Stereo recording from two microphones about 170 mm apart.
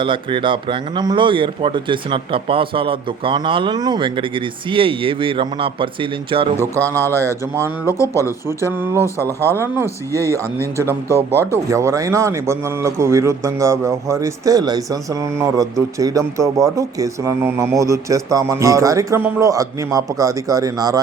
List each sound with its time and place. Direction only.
0.0 s a man's voice: 30° right (ahead or behind)
6.6 s speech: 10° left (ahead or behind)
6.9 s a man's voice: 15° right (ahead or behind)
7.9 s speech: 15° left (ahead or behind)
8.7 s a man's voice: 15° right (ahead or behind)